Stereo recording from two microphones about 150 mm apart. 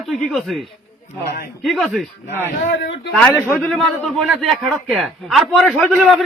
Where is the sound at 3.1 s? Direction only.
10° left (ahead or behind).